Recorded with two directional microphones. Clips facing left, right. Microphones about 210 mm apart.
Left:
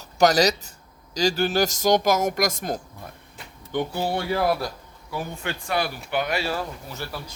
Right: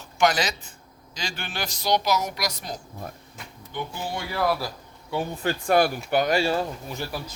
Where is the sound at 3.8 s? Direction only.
65° left (ahead or behind).